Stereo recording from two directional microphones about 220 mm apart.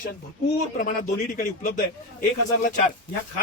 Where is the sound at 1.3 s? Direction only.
35° left (ahead or behind).